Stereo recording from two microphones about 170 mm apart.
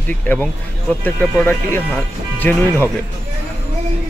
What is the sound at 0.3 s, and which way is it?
Speech, 10° left (ahead or behind).